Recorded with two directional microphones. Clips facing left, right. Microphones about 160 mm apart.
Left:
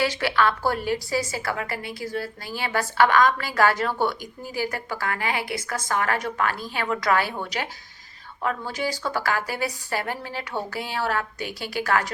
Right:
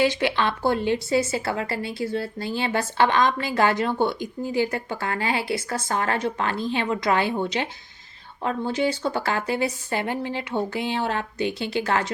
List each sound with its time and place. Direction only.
0.0 s a woman's voice: 20° right (ahead or behind)